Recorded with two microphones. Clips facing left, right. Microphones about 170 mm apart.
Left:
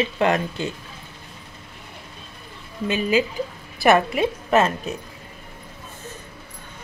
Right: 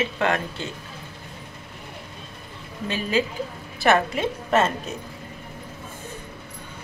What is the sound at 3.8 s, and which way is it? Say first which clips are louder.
Speech: left 3 dB; 10° left (ahead or behind).